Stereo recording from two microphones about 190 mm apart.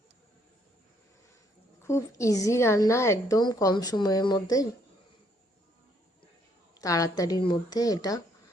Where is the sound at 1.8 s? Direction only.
15° left (ahead or behind).